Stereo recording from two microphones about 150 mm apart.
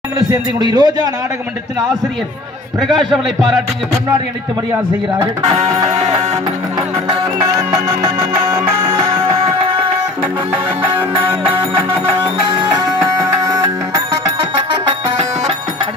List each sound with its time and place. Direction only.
0.3 s speech: 30° right (ahead or behind)
5.1 s speech: 25° right (ahead or behind)
5.9 s music: 45° right (ahead or behind)
7.4 s music: 20° right (ahead or behind)
9.2 s music: 35° right (ahead or behind)
10.5 s music: 10° right (ahead or behind)